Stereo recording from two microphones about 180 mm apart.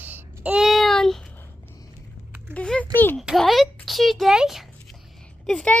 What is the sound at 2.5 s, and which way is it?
Speech, 5° left (ahead or behind).